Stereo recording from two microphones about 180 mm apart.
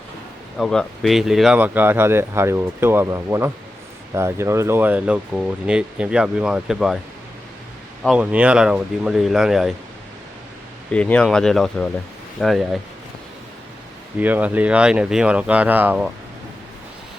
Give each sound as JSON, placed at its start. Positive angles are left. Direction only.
{"t": 0.6, "sound": "speech", "side_deg": 0}
{"t": 8.0, "sound": "speech", "side_deg": -5}
{"t": 10.9, "sound": "speech", "side_deg": 5}
{"t": 14.2, "sound": "speech", "side_deg": -10}